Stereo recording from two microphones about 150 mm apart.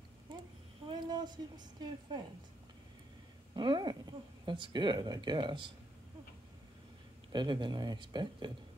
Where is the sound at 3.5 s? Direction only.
30° right (ahead or behind).